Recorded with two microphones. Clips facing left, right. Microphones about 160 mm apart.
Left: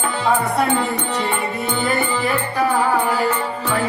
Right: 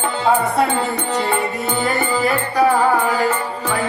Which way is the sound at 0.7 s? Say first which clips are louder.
Right 1 dB; 35° right (ahead or behind).